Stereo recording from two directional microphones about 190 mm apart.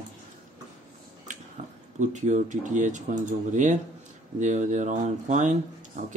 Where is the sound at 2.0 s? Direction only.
40° right (ahead or behind).